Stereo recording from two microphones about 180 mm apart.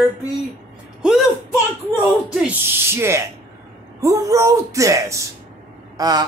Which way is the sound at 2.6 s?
15° right (ahead or behind).